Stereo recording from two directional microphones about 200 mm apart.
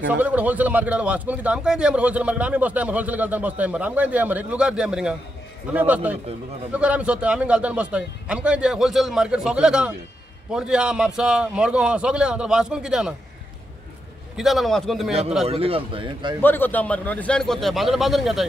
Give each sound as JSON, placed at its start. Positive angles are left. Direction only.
{"t": 0.1, "sound": "a man's voice", "side_deg": -5}
{"t": 14.3, "sound": "a man's voice", "side_deg": 0}
{"t": 15.4, "sound": "a man's voice", "side_deg": -30}
{"t": 16.3, "sound": "a man's voice", "side_deg": 10}